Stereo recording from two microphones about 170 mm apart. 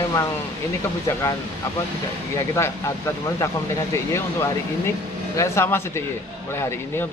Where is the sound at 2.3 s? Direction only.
20° left (ahead or behind).